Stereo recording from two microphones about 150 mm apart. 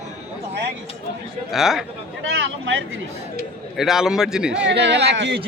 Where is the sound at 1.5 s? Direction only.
Centre (ahead or behind).